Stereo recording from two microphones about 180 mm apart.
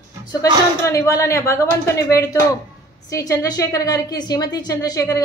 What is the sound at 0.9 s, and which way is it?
A woman's voice, 15° left (ahead or behind).